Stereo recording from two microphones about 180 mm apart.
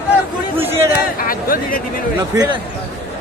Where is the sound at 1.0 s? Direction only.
55° left (ahead or behind).